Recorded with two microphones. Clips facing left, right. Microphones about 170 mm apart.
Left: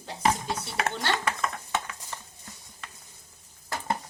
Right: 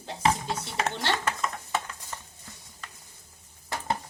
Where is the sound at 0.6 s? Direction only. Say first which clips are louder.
Even; 25° right (ahead or behind).